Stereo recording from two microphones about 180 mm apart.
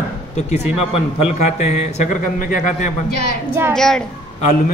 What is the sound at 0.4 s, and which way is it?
A man's voice, 40° left (ahead or behind).